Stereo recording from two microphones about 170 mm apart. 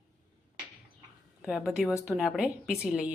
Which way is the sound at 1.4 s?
5° right (ahead or behind).